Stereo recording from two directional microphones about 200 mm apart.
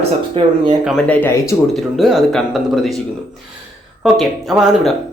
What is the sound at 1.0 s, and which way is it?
Speech, 10° left (ahead or behind).